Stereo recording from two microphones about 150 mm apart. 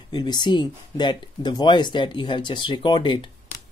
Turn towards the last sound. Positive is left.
turn(degrees=35)  # may be behind; listen again after turning